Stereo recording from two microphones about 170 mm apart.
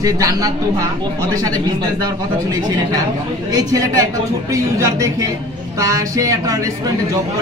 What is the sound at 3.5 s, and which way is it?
A man's voice, 20° right (ahead or behind).